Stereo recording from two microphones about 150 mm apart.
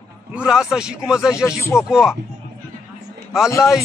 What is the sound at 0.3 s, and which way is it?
A man's voice, 5° right (ahead or behind).